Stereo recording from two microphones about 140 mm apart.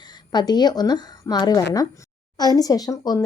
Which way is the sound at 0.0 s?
30° left (ahead or behind).